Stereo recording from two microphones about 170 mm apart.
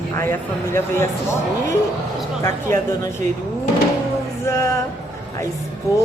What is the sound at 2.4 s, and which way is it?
Speech, 15° left (ahead or behind).